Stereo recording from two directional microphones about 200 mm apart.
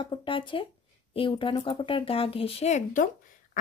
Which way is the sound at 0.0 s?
25° left (ahead or behind).